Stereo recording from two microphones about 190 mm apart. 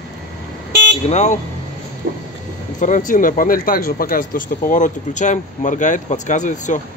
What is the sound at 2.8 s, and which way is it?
Speech, 40° left (ahead or behind).